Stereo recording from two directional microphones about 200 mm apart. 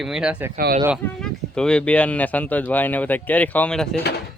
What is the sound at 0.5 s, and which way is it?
Speech, 45° right (ahead or behind).